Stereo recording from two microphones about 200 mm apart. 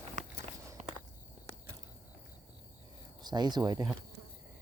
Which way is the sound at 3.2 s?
20° right (ahead or behind).